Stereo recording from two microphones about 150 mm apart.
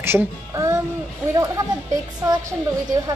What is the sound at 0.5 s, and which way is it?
Music, 20° right (ahead or behind).